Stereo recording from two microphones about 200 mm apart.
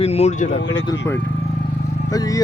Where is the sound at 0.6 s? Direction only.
60° left (ahead or behind).